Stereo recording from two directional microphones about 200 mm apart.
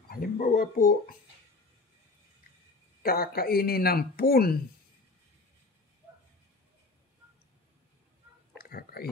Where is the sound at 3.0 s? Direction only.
50° left (ahead or behind).